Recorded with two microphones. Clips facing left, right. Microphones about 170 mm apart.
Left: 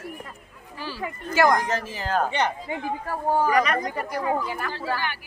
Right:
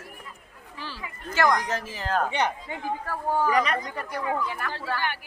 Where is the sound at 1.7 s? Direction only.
Centre (ahead or behind).